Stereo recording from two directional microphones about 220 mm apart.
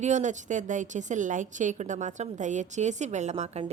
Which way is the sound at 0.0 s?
35° right (ahead or behind).